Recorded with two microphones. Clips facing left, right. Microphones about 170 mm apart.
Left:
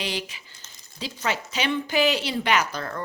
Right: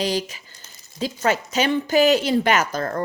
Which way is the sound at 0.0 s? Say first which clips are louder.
Right 7 dB; 40° right (ahead or behind).